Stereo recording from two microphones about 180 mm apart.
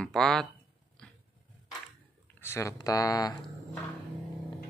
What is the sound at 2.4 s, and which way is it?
Speech, 15° left (ahead or behind).